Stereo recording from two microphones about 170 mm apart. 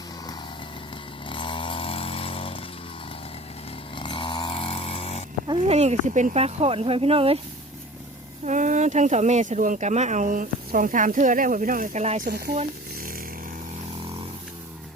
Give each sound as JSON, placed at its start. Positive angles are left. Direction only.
{"t": 1.3, "sound": "vehicle", "side_deg": 30}
{"t": 3.9, "sound": "vehicle", "side_deg": 30}
{"t": 5.5, "sound": "speech", "side_deg": -35}
{"t": 8.4, "sound": "speech", "side_deg": -45}